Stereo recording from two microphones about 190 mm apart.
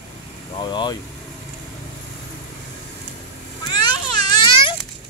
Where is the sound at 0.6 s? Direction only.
25° left (ahead or behind).